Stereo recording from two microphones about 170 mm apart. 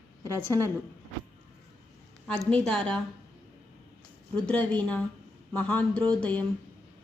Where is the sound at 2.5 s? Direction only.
5° left (ahead or behind).